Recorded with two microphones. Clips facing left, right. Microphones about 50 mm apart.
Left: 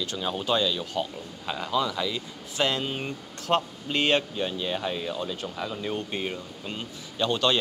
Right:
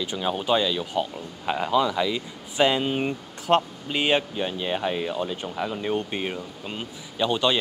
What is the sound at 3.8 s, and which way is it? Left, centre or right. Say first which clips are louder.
Speech: right 1 dB; centre.